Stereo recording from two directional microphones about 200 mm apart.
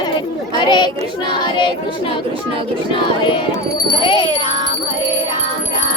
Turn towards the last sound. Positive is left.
turn(degrees=25)  # may be behind; listen again after turning